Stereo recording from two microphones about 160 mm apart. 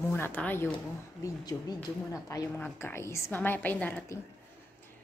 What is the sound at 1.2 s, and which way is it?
A woman's voice, 25° left (ahead or behind).